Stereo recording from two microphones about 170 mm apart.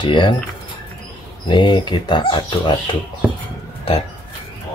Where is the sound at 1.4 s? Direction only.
25° left (ahead or behind).